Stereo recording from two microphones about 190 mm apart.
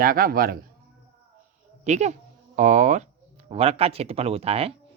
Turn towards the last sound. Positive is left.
turn(degrees=-30)  # may be behind; listen again after turning